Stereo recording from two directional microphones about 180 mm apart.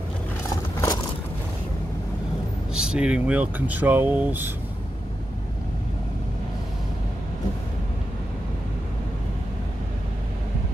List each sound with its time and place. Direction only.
0.5 s scissors: 20° left (ahead or behind)
2.7 s speech: 5° right (ahead or behind)